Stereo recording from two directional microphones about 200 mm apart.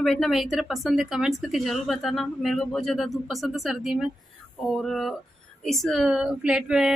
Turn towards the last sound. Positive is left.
turn(degrees=-5)  # may be behind; listen again after turning